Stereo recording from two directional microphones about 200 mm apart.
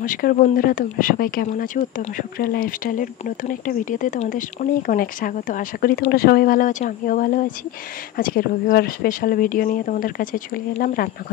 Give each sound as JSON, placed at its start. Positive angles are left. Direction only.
{"t": 0.0, "sound": "speech", "side_deg": 45}